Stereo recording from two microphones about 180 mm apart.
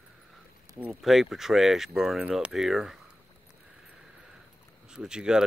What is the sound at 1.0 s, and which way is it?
Speech, centre (ahead or behind).